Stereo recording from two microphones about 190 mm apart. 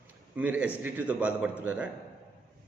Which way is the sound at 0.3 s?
5° right (ahead or behind).